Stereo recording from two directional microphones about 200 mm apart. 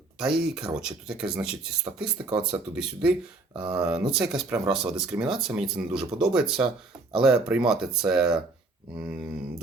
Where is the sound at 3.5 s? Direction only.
20° right (ahead or behind).